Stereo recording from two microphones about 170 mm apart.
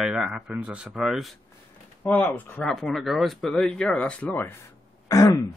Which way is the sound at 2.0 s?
10° left (ahead or behind).